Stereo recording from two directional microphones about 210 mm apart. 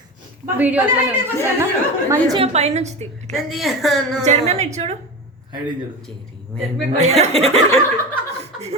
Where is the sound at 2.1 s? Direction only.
20° right (ahead or behind).